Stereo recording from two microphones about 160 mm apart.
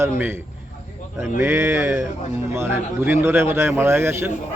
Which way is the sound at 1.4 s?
15° right (ahead or behind).